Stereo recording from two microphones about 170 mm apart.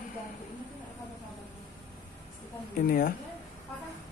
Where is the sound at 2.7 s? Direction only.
55° left (ahead or behind).